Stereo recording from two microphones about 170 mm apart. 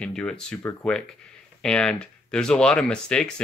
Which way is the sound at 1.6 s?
5° left (ahead or behind).